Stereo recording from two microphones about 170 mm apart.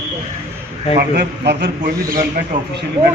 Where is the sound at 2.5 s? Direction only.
50° right (ahead or behind).